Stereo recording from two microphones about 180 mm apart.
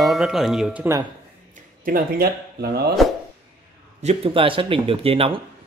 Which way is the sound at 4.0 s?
35° right (ahead or behind).